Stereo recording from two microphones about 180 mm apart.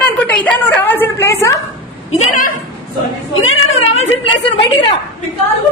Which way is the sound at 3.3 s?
90° left.